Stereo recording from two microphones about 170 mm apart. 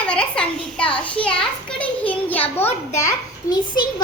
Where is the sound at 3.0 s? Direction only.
20° left (ahead or behind).